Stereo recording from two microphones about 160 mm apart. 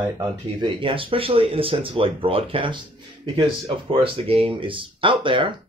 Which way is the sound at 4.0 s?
35° right (ahead or behind).